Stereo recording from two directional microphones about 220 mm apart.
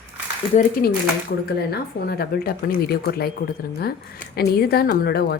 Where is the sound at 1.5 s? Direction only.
45° left (ahead or behind).